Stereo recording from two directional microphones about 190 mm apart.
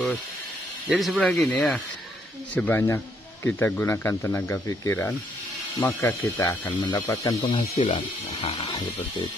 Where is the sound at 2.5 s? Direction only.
10° left (ahead or behind).